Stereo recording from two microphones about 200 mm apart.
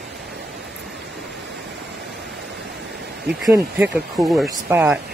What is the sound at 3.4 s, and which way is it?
Speech, 15° right (ahead or behind).